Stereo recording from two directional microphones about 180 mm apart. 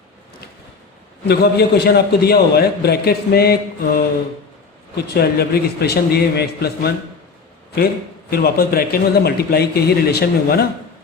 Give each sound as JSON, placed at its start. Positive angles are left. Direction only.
{"t": 1.3, "sound": "a man's voice", "side_deg": 65}
{"t": 8.3, "sound": "a man's voice", "side_deg": 60}